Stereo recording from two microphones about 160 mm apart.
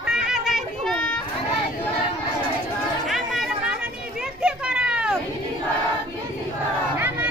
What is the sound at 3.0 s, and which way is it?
Chatter, centre (ahead or behind).